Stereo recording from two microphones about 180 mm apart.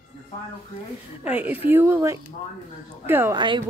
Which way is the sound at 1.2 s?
10° right (ahead or behind).